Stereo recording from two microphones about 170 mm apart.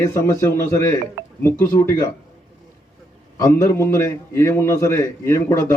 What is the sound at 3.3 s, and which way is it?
A man's voice, 20° left (ahead or behind).